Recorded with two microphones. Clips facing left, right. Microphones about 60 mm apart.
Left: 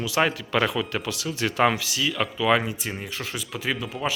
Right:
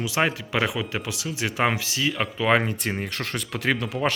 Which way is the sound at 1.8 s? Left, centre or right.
Right.